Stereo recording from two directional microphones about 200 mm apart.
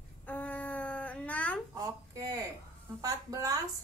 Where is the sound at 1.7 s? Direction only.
15° right (ahead or behind).